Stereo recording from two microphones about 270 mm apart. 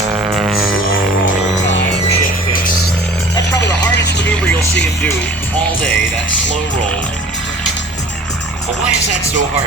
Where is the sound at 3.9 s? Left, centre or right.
Left.